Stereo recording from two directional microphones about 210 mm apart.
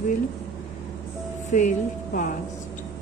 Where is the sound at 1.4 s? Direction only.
35° left (ahead or behind).